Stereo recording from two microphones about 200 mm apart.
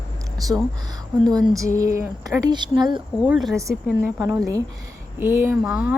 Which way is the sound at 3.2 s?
5° right (ahead or behind).